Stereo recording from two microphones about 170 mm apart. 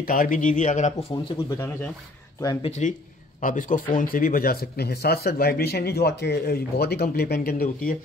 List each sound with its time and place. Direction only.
0.0 s a man's voice: 55° left (ahead or behind)
1.1 s speech: 15° left (ahead or behind)
2.8 s a man's voice: 45° left (ahead or behind); by 7.9 s 60° left (ahead or behind)